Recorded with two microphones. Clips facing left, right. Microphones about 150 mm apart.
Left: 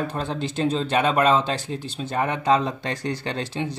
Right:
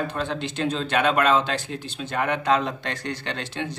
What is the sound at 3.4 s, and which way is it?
Speech, 5° left (ahead or behind).